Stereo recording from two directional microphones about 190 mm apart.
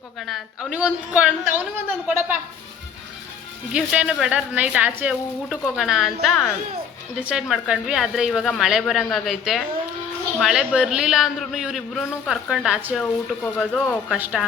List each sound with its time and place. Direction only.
0.2 s a woman's voice: centre (ahead or behind)
3.7 s a woman's voice: 5° right (ahead or behind)